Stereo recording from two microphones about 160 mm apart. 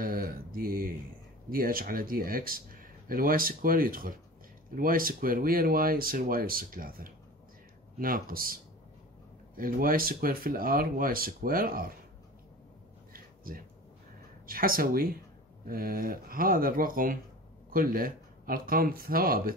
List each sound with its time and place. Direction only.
0.0 s mantra: 65° right (ahead or behind)
1.5 s speech: 65° right (ahead or behind)
9.6 s speech: 65° right (ahead or behind)
13.1 s a sound: 65° right (ahead or behind)
14.4 s speech: 60° right (ahead or behind)